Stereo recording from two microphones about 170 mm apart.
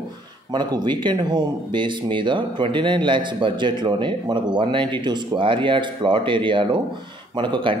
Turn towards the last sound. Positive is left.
turn(degrees=-30)  # may be behind; listen again after turning